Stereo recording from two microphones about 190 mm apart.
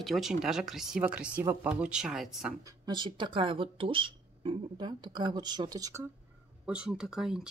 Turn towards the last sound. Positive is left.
turn(degrees=-5)  # may be behind; listen again after turning